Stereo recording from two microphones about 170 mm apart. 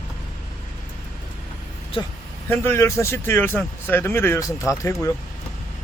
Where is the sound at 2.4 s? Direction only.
10° left (ahead or behind).